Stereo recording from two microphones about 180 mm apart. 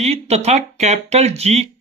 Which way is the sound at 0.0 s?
35° right (ahead or behind).